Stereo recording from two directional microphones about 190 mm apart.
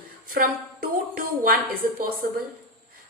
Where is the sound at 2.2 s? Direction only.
50° right (ahead or behind).